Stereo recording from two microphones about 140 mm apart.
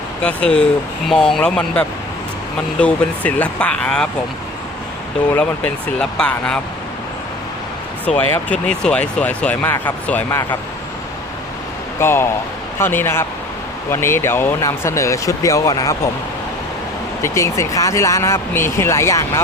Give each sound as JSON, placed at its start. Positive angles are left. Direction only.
{"t": 0.2, "sound": "speech", "side_deg": 10}
{"t": 5.3, "sound": "speech", "side_deg": 10}
{"t": 8.0, "sound": "speech", "side_deg": 10}
{"t": 11.9, "sound": "speech", "side_deg": 15}
{"t": 17.2, "sound": "speech", "side_deg": 20}